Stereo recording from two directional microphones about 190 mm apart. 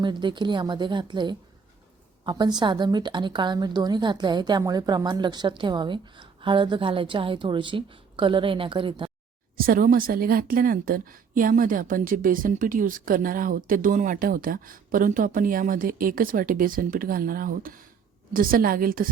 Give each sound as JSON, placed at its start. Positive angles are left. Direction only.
{"t": 0.0, "sound": "a woman's voice", "side_deg": -25}
{"t": 9.6, "sound": "a woman's voice", "side_deg": -50}